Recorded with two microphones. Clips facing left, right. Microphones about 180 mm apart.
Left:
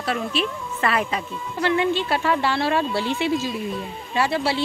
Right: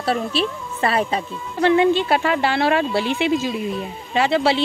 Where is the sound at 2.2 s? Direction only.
75° right (ahead or behind).